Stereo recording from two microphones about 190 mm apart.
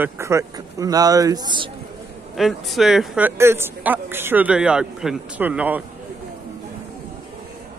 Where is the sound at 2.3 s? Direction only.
Centre (ahead or behind).